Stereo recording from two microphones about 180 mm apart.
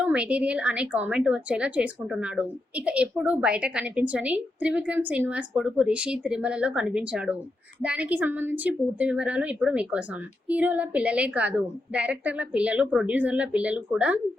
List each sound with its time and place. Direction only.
0.0 s a woman's voice: 5° right (ahead or behind)